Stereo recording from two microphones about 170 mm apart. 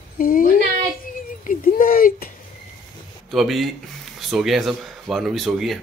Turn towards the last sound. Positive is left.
turn(degrees=0)  # may be behind; listen again after turning